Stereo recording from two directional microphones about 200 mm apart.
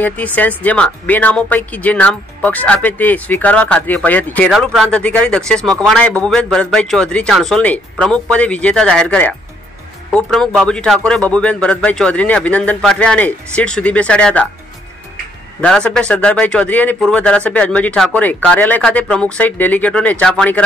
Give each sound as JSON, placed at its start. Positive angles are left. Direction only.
{"t": 0.0, "sound": "speech", "side_deg": 10}
{"t": 15.6, "sound": "speech", "side_deg": 5}